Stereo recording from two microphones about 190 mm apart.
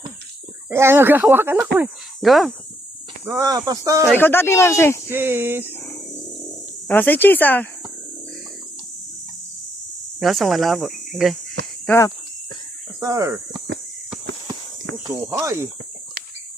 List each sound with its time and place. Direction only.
0.7 s speech: 15° right (ahead or behind)
3.4 s speech: 20° right (ahead or behind)
4.1 s speech: 10° left (ahead or behind)
5.0 s speech: 10° right (ahead or behind)
5.8 s a sound: 5° left (ahead or behind)
6.8 s speech: 10° left (ahead or behind)
10.2 s speech: centre (ahead or behind)
11.9 s speech: 15° left (ahead or behind)
13.0 s speech: 15° right (ahead or behind)
15.0 s speech: 15° right (ahead or behind)